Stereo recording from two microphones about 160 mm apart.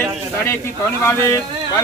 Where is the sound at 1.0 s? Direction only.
15° left (ahead or behind).